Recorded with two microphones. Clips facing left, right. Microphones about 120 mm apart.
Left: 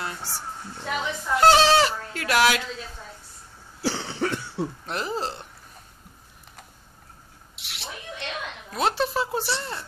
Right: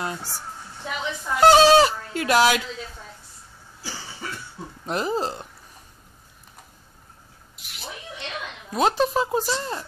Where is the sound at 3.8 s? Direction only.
75° left (ahead or behind).